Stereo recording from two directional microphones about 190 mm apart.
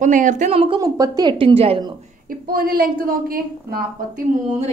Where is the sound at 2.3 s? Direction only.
50° right (ahead or behind).